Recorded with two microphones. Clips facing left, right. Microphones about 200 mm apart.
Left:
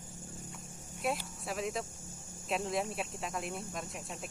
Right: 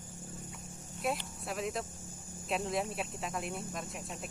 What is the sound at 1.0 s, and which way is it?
Speech, centre (ahead or behind).